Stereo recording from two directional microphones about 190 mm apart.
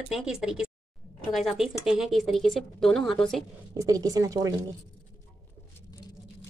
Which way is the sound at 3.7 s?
20° right (ahead or behind).